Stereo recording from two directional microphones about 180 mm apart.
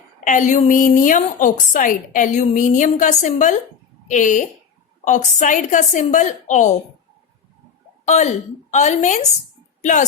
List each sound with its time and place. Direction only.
0.3 s a woman's voice: 45° left (ahead or behind)
8.0 s a woman's voice: 40° left (ahead or behind)